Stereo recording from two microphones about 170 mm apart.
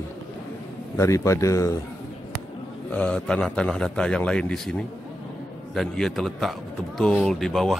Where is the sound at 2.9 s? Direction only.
5° left (ahead or behind).